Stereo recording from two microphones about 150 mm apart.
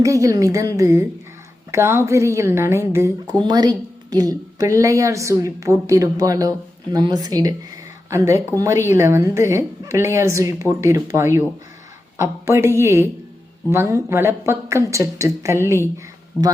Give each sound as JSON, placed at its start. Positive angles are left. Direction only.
{"t": 0.0, "sound": "a woman's voice", "side_deg": -20}